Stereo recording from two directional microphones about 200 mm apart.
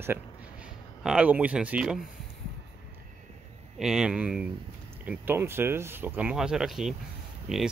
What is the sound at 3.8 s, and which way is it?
Speech, 5° right (ahead or behind).